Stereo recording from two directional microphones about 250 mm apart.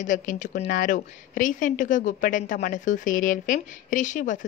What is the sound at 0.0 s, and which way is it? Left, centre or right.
A woman's voice, left.